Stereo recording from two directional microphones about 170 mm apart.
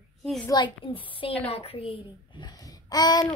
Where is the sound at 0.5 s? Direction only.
30° left (ahead or behind).